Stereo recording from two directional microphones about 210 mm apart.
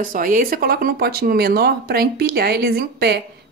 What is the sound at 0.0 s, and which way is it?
Speech, 40° right (ahead or behind).